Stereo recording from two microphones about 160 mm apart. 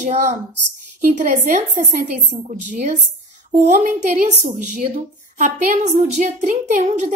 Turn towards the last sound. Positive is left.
turn(degrees=-50)  # may be behind; listen again after turning